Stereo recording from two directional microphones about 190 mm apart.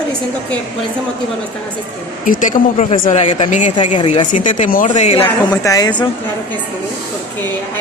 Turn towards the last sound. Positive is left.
turn(degrees=20)  # may be behind; listen again after turning